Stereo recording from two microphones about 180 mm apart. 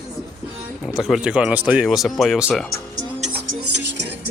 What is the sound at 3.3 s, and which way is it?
Music, 65° right (ahead or behind).